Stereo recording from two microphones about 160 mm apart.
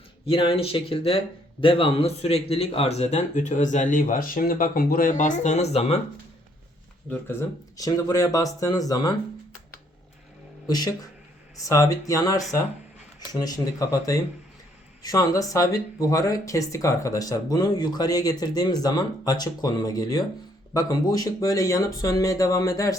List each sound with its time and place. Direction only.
0.3 s speech: 35° left (ahead or behind)
7.1 s speech: 15° left (ahead or behind)
10.7 s speech: 25° left (ahead or behind)